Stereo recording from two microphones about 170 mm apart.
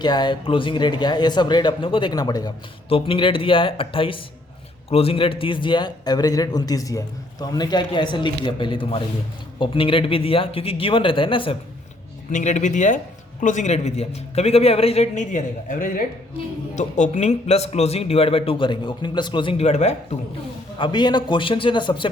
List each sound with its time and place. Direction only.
0.0 s a man's voice: 25° left (ahead or behind)
12.3 s speech: 45° left (ahead or behind)
20.7 s a man's voice: 25° left (ahead or behind)